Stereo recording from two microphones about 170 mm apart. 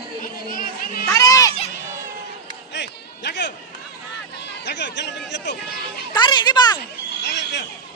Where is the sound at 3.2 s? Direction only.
90° left.